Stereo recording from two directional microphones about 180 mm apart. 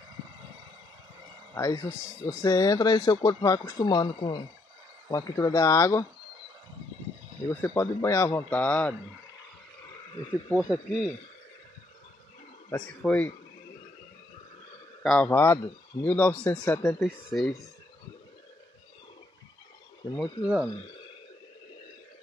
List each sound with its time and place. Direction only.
1.5 s a man's voice: 20° left (ahead or behind)
7.6 s speech: 15° left (ahead or behind)
10.6 s speech: 5° right (ahead or behind)
12.7 s speech: 5° left (ahead or behind)
15.0 s speech: 10° left (ahead or behind)
20.2 s speech: centre (ahead or behind)